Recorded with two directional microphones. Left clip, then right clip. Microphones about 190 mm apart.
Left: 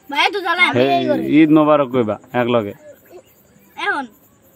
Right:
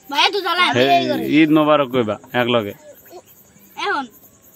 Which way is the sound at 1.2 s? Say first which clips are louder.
Left 2 dB; 10° left (ahead or behind).